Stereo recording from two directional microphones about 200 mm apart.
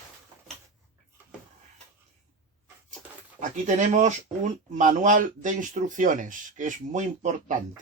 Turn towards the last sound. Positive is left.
turn(degrees=-40)  # may be behind; listen again after turning